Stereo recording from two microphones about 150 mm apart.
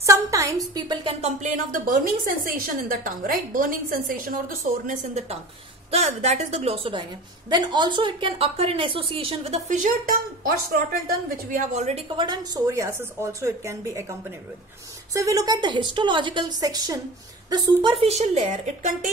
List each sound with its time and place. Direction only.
0.0 s a sound: 20° right (ahead or behind)
1.2 s a woman's voice: 55° right (ahead or behind)
4.8 s a woman's voice: 50° right (ahead or behind)
12.2 s a woman's voice: 25° right (ahead or behind)
15.1 s a woman's voice: 20° right (ahead or behind)
17.5 s a woman's voice: 35° right (ahead or behind); by 19.0 s 50° right (ahead or behind)